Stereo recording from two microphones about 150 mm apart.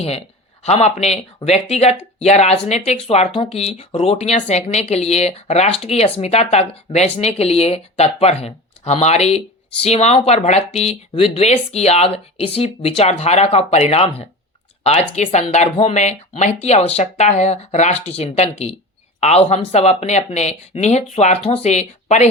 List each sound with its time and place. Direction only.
0.0 s speech: 40° left (ahead or behind)